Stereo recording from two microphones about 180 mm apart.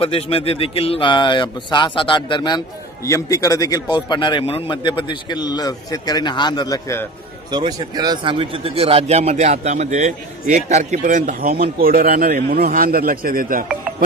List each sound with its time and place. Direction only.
0.0 s a man's voice: 30° left (ahead or behind); by 7.1 s 15° left (ahead or behind)
7.5 s a man's voice: 25° right (ahead or behind); by 13.7 s 50° right (ahead or behind)